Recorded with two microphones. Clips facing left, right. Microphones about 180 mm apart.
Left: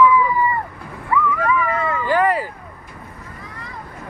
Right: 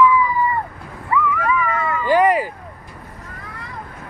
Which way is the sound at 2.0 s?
15° right (ahead or behind).